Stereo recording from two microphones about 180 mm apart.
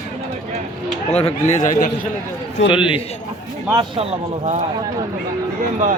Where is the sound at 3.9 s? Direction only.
35° right (ahead or behind).